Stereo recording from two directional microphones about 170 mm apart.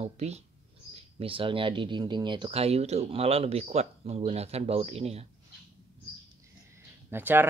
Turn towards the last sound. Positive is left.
turn(degrees=-10)  # may be behind; listen again after turning